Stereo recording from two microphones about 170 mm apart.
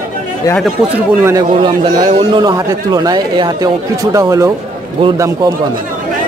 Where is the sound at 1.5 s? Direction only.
30° right (ahead or behind).